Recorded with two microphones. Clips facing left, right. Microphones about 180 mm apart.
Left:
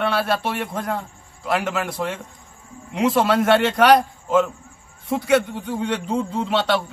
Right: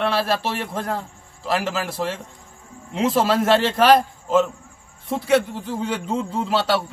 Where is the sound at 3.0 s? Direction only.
25° right (ahead or behind).